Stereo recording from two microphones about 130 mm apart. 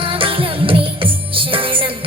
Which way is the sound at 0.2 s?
45° right (ahead or behind).